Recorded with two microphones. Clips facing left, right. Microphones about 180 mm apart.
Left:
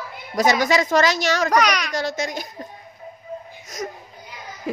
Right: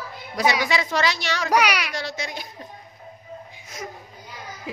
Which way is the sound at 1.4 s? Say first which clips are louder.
Right 2 dB; 10° right (ahead or behind).